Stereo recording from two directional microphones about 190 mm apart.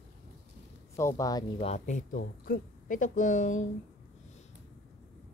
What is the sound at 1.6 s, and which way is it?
A woman's voice, 35° left (ahead or behind).